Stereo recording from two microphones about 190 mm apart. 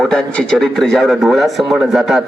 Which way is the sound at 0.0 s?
5° left (ahead or behind).